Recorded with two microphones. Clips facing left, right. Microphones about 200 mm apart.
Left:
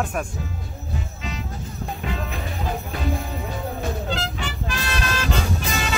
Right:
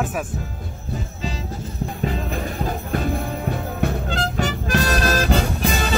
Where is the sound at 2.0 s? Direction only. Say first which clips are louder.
Right 5 dB; 45° right (ahead or behind).